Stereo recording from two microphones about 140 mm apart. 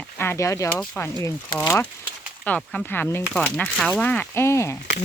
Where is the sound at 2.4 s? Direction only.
10° left (ahead or behind).